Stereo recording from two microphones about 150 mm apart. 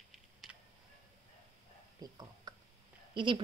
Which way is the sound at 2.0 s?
25° right (ahead or behind).